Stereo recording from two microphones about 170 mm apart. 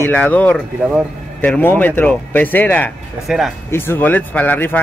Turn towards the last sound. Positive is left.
turn(degrees=10)  # may be behind; listen again after turning